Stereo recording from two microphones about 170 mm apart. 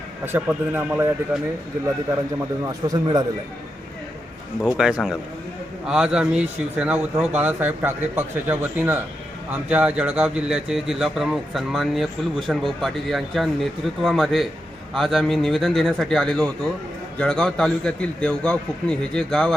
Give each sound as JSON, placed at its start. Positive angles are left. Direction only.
{"t": 0.3, "sound": "speech", "side_deg": -10}
{"t": 2.6, "sound": "speech", "side_deg": -20}
{"t": 4.8, "sound": "a man's voice", "side_deg": -5}